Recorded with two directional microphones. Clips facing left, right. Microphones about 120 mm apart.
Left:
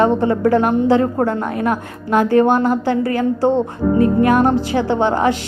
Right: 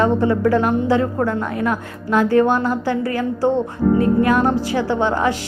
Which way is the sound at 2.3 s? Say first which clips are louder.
Left 4 dB; 20° left (ahead or behind).